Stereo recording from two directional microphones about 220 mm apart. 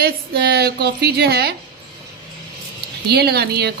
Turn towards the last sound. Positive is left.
turn(degrees=-45)  # may be behind; listen again after turning